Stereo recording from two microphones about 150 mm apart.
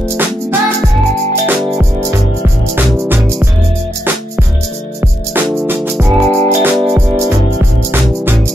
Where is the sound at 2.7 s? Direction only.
15° right (ahead or behind).